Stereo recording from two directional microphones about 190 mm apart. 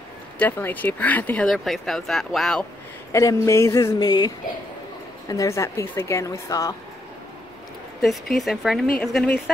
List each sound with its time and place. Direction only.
0.4 s speech: 10° left (ahead or behind)
3.1 s speech: 15° left (ahead or behind)
5.3 s speech: 15° left (ahead or behind)
8.0 s speech: centre (ahead or behind)